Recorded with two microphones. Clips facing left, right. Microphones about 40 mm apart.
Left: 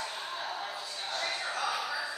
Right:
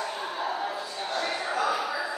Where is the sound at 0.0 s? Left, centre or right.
Right.